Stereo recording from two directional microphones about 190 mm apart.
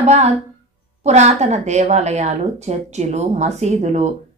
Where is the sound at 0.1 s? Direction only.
35° right (ahead or behind).